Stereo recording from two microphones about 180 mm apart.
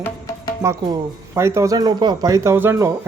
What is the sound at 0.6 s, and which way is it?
Speech, 15° right (ahead or behind).